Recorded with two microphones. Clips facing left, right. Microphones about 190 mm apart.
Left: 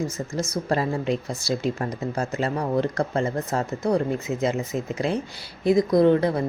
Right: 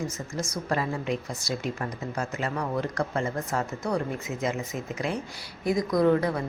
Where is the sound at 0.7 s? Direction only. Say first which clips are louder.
Left 4 dB; 30° left (ahead or behind).